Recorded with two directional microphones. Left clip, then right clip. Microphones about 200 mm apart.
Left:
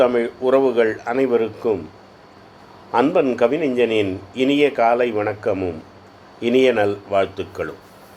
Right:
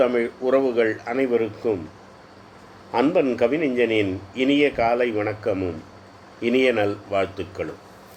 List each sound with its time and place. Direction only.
0.0 s speech: 15° left (ahead or behind)
2.9 s speech: 15° left (ahead or behind)